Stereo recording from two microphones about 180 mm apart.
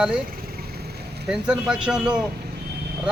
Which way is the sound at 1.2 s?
5° right (ahead or behind).